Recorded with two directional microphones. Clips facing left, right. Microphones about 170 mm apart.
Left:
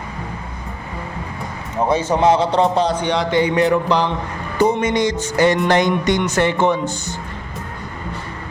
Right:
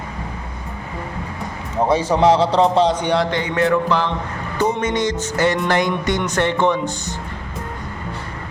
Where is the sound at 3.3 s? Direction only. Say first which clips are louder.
Left 3 dB; 15° left (ahead or behind).